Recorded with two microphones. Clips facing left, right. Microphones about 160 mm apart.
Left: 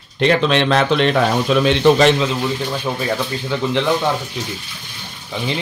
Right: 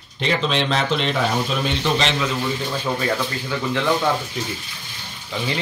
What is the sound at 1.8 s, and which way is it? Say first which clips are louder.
Speech: left 11 dB; 50° left (ahead or behind).